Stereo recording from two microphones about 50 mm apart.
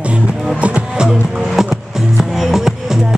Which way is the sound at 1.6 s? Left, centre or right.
Centre.